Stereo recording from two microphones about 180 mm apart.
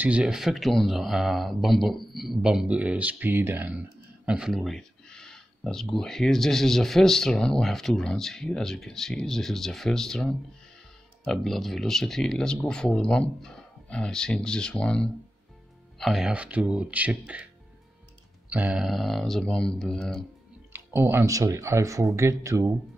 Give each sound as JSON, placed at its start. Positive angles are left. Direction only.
{"t": 0.0, "sound": "speech", "side_deg": -5}
{"t": 18.5, "sound": "speech", "side_deg": -5}
{"t": 20.7, "sound": "speech", "side_deg": -10}